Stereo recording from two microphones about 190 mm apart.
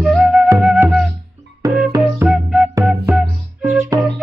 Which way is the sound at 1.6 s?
20° right (ahead or behind).